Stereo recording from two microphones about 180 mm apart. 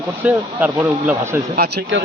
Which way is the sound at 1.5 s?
60° right (ahead or behind).